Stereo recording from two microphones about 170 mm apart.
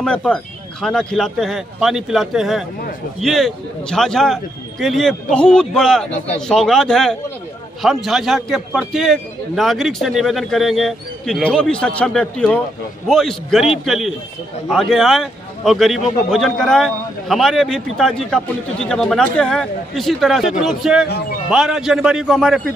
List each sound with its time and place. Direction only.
0.0 s a man's voice: 5° left (ahead or behind)